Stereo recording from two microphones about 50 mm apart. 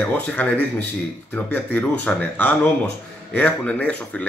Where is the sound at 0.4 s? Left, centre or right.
Left.